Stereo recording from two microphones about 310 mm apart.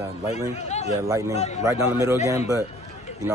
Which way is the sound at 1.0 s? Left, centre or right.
Centre.